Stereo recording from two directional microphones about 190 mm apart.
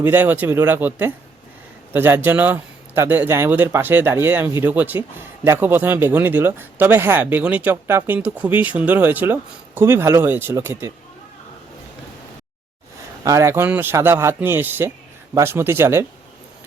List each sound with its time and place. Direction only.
0.0 s speech: 10° right (ahead or behind)
13.2 s speech: 15° right (ahead or behind)